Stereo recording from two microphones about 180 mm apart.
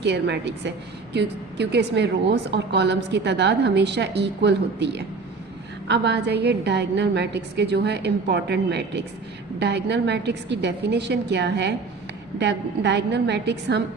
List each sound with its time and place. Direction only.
0.0 s a woman's voice: 75° right (ahead or behind)